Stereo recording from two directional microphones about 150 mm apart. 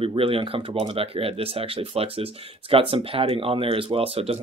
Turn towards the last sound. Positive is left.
turn(degrees=-40)  # may be behind; listen again after turning